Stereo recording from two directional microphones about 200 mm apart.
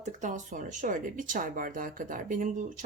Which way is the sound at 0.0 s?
35° right (ahead or behind).